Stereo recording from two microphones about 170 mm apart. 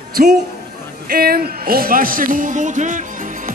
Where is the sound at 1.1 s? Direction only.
60° right (ahead or behind).